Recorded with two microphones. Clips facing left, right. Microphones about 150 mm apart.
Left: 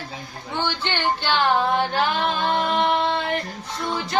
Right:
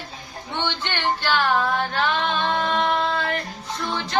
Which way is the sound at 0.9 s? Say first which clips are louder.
Right 1 dB; 20° left (ahead or behind).